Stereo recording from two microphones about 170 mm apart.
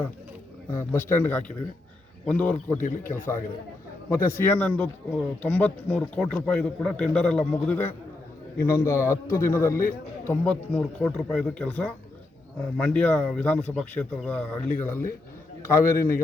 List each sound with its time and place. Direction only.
0.7 s speech: 15° left (ahead or behind)